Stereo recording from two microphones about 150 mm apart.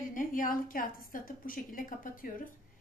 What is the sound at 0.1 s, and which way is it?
A woman's voice, 65° left (ahead or behind).